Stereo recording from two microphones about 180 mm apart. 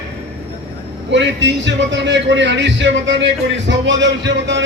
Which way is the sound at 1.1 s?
85° right.